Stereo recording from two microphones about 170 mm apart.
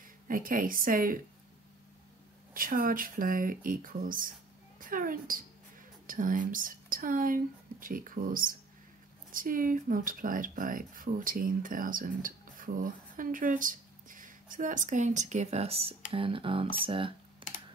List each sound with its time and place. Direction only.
0.3 s speech: 55° right (ahead or behind)
2.5 s speech: 55° right (ahead or behind)
4.7 s a sound: 55° right (ahead or behind)
6.0 s speech: 55° right (ahead or behind); by 17.5 s 30° right (ahead or behind)